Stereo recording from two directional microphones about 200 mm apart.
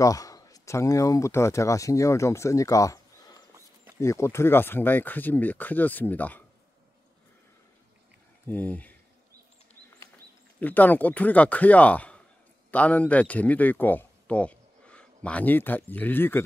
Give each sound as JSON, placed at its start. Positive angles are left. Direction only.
{"t": 0.0, "sound": "speech", "side_deg": 15}
{"t": 8.5, "sound": "speech", "side_deg": 10}
{"t": 10.6, "sound": "speech", "side_deg": 10}